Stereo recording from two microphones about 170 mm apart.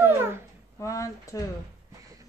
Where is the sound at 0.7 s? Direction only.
20° left (ahead or behind).